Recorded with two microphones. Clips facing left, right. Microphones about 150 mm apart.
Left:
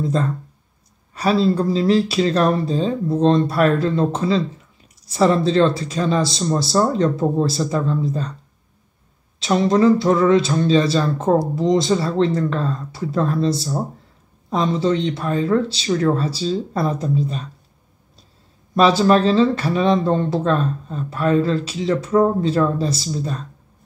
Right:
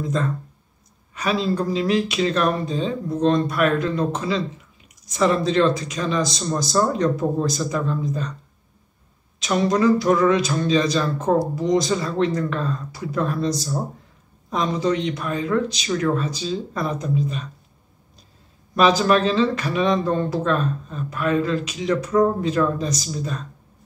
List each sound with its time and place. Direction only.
0.0 s speech: 30° left (ahead or behind)
9.4 s speech: 25° left (ahead or behind)
18.8 s speech: 30° left (ahead or behind)